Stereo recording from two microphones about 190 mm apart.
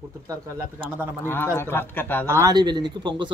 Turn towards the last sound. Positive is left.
turn(degrees=-25)  # may be behind; listen again after turning